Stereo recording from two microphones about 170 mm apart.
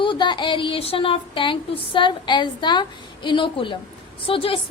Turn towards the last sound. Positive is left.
turn(degrees=30)  # may be behind; listen again after turning